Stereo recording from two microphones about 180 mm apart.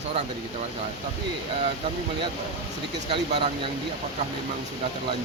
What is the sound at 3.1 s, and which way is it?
Speech, 30° right (ahead or behind).